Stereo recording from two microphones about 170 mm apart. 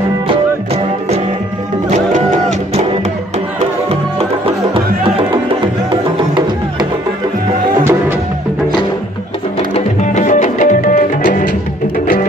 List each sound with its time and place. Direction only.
0.3 s music: 35° right (ahead or behind)
1.9 s music: 45° right (ahead or behind)
3.9 s music: 35° right (ahead or behind)
5.9 s music: 25° right (ahead or behind)
9.8 s music: 45° left (ahead or behind)